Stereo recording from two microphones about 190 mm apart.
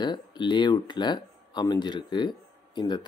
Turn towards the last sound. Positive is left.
turn(degrees=25)  # may be behind; listen again after turning